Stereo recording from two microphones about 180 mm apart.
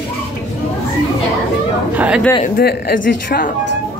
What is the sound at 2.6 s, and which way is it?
Speech, 60° left (ahead or behind).